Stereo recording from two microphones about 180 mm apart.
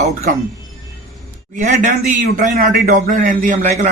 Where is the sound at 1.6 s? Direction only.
45° right (ahead or behind).